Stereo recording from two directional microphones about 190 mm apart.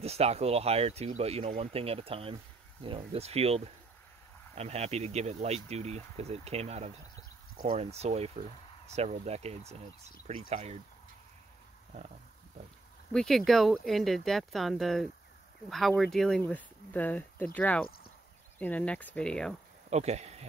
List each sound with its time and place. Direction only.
0.0 s speech: 35° right (ahead or behind)
13.1 s speech: centre (ahead or behind)
17.8 s a sound: 50° left (ahead or behind)
18.6 s speech: 10° left (ahead or behind)
19.9 s speech: 35° right (ahead or behind)